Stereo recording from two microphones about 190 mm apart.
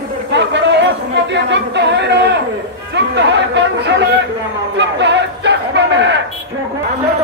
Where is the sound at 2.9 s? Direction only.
65° right (ahead or behind).